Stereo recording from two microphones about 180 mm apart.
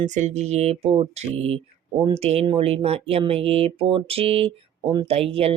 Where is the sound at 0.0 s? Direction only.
40° right (ahead or behind).